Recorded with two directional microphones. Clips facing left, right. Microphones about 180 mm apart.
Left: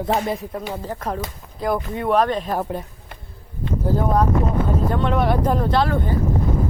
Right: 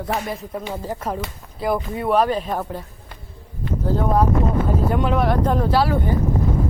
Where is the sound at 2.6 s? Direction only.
20° left (ahead or behind).